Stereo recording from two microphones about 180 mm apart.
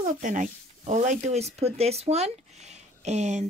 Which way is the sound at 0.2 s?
45° right (ahead or behind).